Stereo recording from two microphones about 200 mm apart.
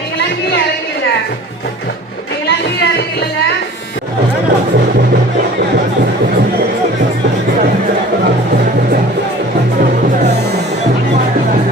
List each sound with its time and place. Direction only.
2.5 s music: 60° left (ahead or behind)
9.8 s music: 45° right (ahead or behind)